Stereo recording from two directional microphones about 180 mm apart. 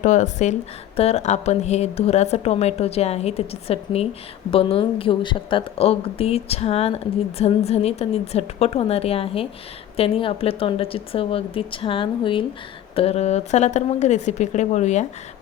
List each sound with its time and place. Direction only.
0.0 s a woman's voice: 40° left (ahead or behind)